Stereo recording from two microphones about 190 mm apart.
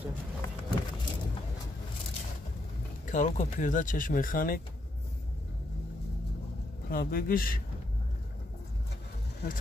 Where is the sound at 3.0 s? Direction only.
40° left (ahead or behind).